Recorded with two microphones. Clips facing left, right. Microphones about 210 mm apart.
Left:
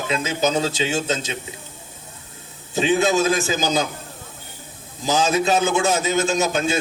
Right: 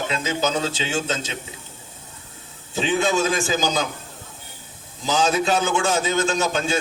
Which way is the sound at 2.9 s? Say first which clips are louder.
Left 2 dB; 40° left (ahead or behind).